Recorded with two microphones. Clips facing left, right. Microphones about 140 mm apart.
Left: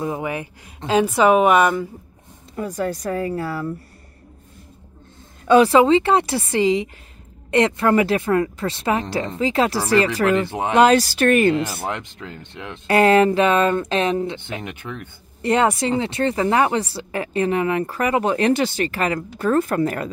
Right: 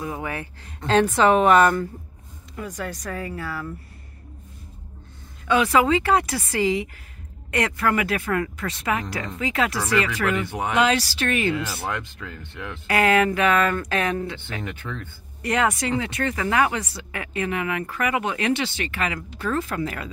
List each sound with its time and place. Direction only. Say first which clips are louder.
0.0 s a woman's voice: left 5 dB; 20° left (ahead or behind)
2.5 s speech: left 7 dB; 30° left (ahead or behind)
5.5 s speech: left 6 dB; 30° left (ahead or behind)
10.8 s speech: left 8 dB; 45° left (ahead or behind)
11.8 s speech: left 2 dB; 20° left (ahead or behind)
12.8 s speech: left 5 dB; 35° left (ahead or behind); by 15.0 s 15° left (ahead or behind)
15.4 s speech: left 5 dB; 30° left (ahead or behind); by 20.1 s 45° left (ahead or behind)